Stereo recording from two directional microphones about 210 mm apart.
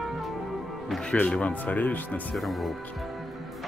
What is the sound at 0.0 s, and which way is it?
Music, centre (ahead or behind).